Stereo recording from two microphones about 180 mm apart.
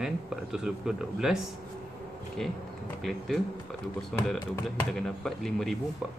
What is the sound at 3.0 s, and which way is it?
Speech, centre (ahead or behind).